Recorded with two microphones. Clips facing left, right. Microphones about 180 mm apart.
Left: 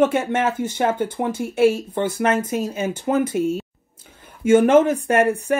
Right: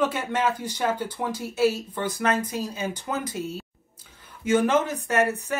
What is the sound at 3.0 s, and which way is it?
Speech, 50° left (ahead or behind).